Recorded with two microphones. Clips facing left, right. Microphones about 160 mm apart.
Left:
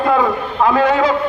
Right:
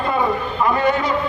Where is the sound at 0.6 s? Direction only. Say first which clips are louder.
Left 5 dB; 90° left.